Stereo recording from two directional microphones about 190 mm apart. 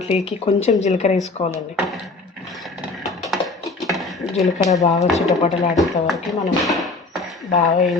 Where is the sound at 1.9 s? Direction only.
Centre (ahead or behind).